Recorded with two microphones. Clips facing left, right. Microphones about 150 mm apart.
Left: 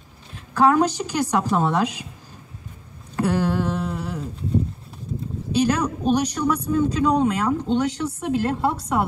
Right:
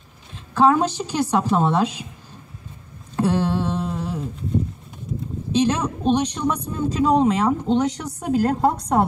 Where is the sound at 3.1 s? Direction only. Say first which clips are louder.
Right 1 dB; 20° right (ahead or behind).